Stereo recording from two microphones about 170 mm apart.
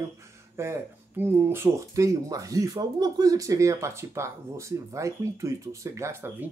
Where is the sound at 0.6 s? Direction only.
15° right (ahead or behind).